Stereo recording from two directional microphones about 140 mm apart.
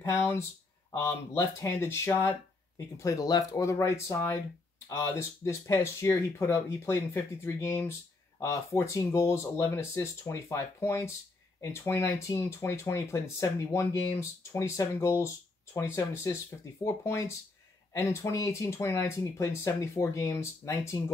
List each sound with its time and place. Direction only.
0.0 s speech: 20° left (ahead or behind)
5.4 s speech: 20° left (ahead or behind)